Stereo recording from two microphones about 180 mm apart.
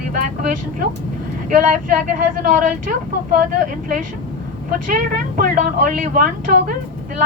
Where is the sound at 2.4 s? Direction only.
50° right (ahead or behind).